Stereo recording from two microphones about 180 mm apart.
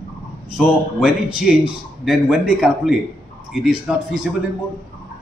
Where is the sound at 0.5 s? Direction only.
5° right (ahead or behind).